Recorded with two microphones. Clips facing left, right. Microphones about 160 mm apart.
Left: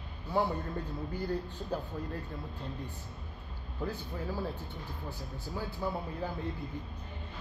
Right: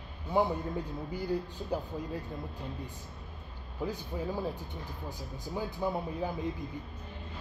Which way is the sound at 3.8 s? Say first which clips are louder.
Right 2 dB; 15° right (ahead or behind).